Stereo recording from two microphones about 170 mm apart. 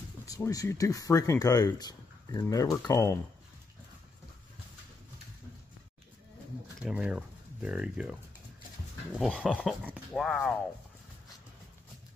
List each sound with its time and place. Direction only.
0.2 s speech: 20° left (ahead or behind)
6.8 s speech: 5° right (ahead or behind)